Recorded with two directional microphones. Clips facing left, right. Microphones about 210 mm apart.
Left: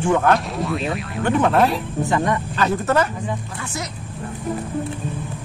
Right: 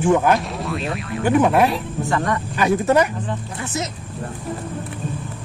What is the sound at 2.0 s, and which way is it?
Speech, 20° left (ahead or behind).